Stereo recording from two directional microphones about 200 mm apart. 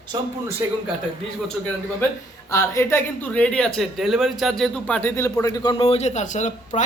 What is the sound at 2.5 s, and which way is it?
A man's voice, 15° left (ahead or behind).